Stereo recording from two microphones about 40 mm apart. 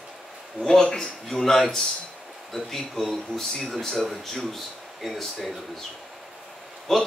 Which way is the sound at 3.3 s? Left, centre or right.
Centre.